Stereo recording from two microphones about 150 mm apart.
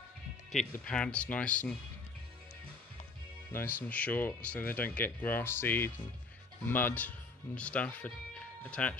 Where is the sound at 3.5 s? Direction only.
15° left (ahead or behind).